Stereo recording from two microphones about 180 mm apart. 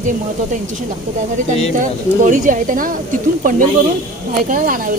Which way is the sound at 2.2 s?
45° right (ahead or behind).